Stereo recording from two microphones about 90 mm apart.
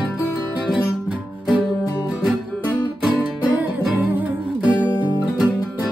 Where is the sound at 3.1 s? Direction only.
15° right (ahead or behind).